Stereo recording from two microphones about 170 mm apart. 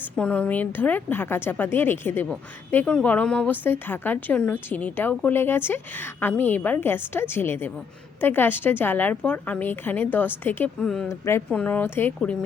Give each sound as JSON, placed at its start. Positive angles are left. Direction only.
{"t": 0.2, "sound": "a woman's voice", "side_deg": 5}
{"t": 11.1, "sound": "a woman's voice", "side_deg": 15}